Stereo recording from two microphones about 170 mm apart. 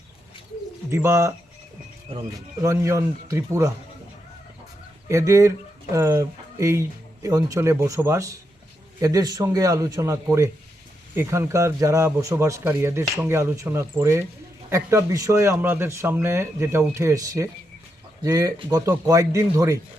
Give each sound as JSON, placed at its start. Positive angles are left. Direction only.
{"t": 0.9, "sound": "a man's voice", "side_deg": -15}
{"t": 2.3, "sound": "a man's voice", "side_deg": -15}
{"t": 5.0, "sound": "a man's voice", "side_deg": -15}